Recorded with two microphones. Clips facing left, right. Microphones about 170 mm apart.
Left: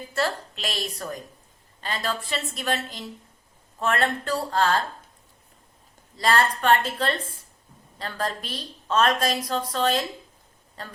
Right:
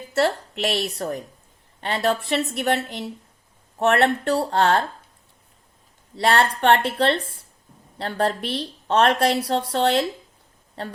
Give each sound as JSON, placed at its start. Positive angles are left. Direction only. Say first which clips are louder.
{"t": 0.1, "sound": "a woman's voice", "louder": "right 6 dB", "side_deg": -65}
{"t": 6.1, "sound": "a woman's voice", "louder": "right 3 dB", "side_deg": -70}